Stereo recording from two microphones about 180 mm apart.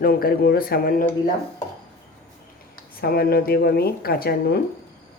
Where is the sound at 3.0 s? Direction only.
60° left (ahead or behind).